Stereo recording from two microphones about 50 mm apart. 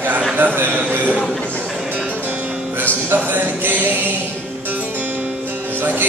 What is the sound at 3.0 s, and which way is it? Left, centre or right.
Speech, right.